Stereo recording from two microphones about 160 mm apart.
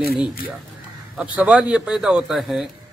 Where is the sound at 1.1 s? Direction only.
10° right (ahead or behind).